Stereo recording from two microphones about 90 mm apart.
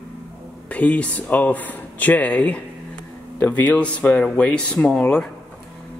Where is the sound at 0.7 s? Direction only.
15° left (ahead or behind).